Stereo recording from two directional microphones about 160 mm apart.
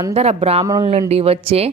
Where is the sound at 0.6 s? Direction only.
20° right (ahead or behind).